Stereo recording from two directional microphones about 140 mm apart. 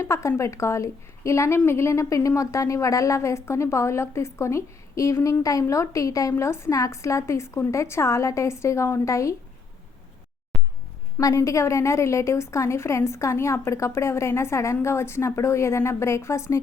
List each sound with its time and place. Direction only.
0.0 s speech: 20° left (ahead or behind)
10.5 s a sound: 5° left (ahead or behind)
11.2 s speech: 25° left (ahead or behind)